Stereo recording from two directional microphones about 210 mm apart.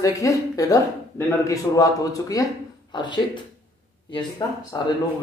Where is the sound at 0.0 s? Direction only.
15° left (ahead or behind).